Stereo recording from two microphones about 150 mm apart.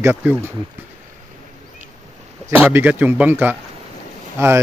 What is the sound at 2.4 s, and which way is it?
Speech, 10° right (ahead or behind).